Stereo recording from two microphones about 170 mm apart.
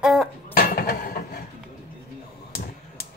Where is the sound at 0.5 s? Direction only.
60° left (ahead or behind).